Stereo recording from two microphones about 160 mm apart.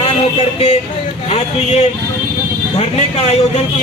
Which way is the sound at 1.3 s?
40° left (ahead or behind).